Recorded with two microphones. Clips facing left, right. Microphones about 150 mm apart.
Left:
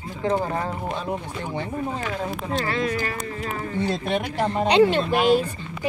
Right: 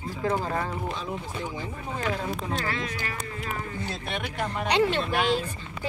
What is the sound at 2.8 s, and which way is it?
Speech, 45° left (ahead or behind).